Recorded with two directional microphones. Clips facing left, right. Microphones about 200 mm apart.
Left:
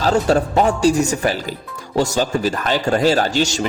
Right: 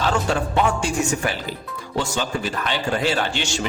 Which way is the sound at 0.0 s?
40° left (ahead or behind).